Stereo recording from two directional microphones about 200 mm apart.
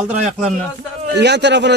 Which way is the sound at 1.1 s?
60° right (ahead or behind).